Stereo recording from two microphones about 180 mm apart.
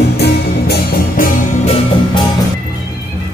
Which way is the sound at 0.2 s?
55° left (ahead or behind).